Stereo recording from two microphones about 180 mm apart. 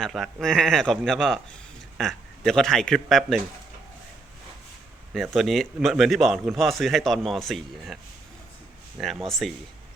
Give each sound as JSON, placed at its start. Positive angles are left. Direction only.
{"t": 0.0, "sound": "speech", "side_deg": 0}
{"t": 5.1, "sound": "speech", "side_deg": 0}
{"t": 9.0, "sound": "speech", "side_deg": 0}